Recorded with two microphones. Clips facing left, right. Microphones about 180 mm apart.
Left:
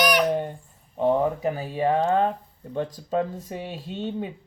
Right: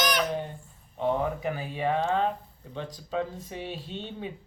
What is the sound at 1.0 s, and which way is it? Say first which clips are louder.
Speech: left 6 dB; 35° left (ahead or behind).